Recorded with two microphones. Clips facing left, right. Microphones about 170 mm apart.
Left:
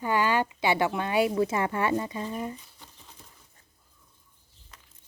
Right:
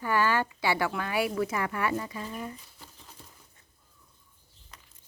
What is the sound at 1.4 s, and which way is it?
Speech, 25° left (ahead or behind).